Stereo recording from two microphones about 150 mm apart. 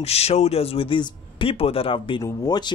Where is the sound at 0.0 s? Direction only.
45° left (ahead or behind).